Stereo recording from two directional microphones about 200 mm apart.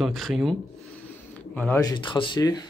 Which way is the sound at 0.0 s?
Centre (ahead or behind).